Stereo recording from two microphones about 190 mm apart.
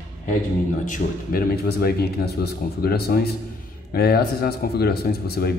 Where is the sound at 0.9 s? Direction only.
50° left (ahead or behind).